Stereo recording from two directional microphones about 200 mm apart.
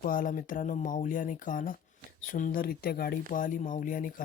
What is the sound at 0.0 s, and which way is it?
Speech, 45° left (ahead or behind).